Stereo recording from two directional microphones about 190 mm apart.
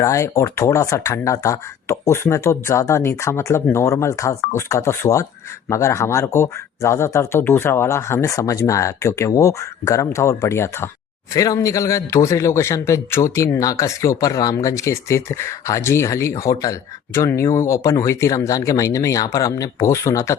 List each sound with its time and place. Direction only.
0.0 s a man's voice: 15° left (ahead or behind)